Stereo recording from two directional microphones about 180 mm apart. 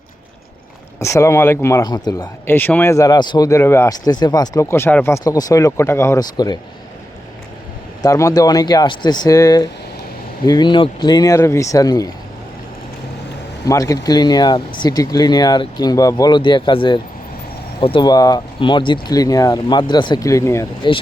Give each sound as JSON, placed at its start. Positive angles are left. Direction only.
{"t": 0.9, "sound": "speech", "side_deg": 15}
{"t": 8.0, "sound": "speech", "side_deg": 20}
{"t": 13.7, "sound": "speech", "side_deg": 20}